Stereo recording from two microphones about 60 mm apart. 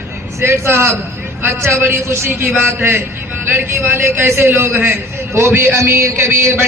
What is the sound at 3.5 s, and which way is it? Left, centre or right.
A man's voice, right.